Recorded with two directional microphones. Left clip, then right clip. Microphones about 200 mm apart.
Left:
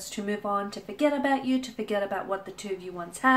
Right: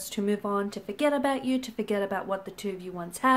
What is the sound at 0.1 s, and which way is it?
Speech, 45° right (ahead or behind).